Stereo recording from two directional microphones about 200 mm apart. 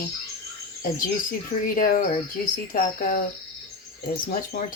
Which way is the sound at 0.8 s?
45° left (ahead or behind).